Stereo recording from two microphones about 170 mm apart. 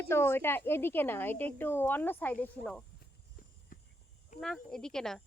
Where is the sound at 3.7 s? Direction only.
55° left (ahead or behind).